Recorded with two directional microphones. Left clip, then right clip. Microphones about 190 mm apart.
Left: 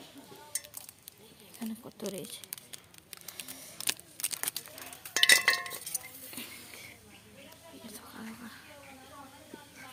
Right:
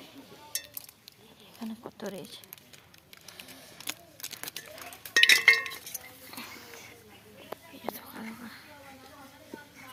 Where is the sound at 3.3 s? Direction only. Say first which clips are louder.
Left 2 dB; 55° left (ahead or behind).